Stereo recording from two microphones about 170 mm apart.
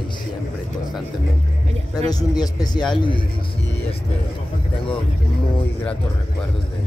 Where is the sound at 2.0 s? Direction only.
25° left (ahead or behind).